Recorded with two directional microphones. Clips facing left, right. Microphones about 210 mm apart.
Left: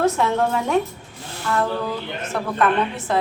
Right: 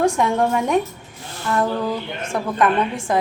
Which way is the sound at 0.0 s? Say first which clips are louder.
Right 1 dB; 15° right (ahead or behind).